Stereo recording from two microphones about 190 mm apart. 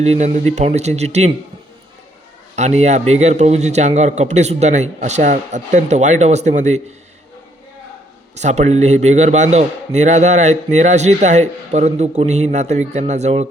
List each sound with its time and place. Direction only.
0.0 s a man's voice: 35° right (ahead or behind)
2.6 s a man's voice: 35° right (ahead or behind)
8.4 s a man's voice: 35° right (ahead or behind)